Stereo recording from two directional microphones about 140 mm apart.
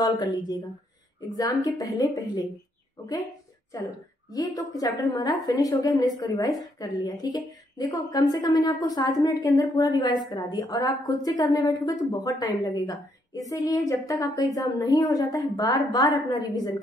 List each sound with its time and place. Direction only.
0.0 s a woman's voice: 30° left (ahead or behind)
4.3 s a woman's voice: 25° left (ahead or behind)